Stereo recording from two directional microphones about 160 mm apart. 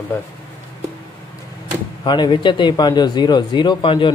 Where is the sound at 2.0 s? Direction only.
25° left (ahead or behind).